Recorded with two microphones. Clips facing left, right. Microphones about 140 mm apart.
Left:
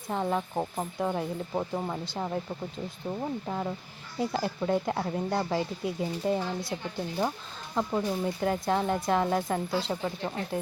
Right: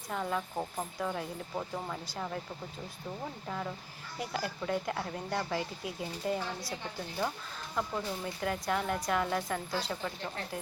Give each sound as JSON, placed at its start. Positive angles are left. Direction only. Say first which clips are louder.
{"t": 0.1, "sound": "speech", "louder": "left 5 dB", "side_deg": 30}
{"t": 3.4, "sound": "speech", "louder": "left 5 dB", "side_deg": 25}
{"t": 7.8, "sound": "speech", "louder": "left 7 dB", "side_deg": 30}